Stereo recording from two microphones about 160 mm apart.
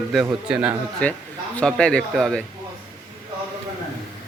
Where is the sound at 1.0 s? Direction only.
10° left (ahead or behind).